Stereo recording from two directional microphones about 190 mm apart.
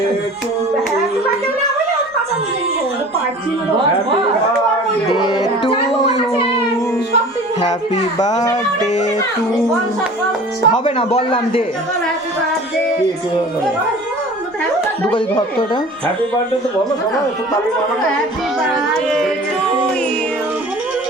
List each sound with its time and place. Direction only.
5.0 s music: 25° left (ahead or behind)
6.1 s a sound: 30° left (ahead or behind)
10.7 s a man's voice: 30° left (ahead or behind)
15.1 s a man's voice: 25° left (ahead or behind)
18.7 s carnatic music: centre (ahead or behind)